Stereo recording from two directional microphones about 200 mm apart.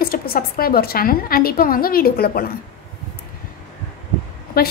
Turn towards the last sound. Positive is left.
turn(degrees=50)  # may be behind; listen again after turning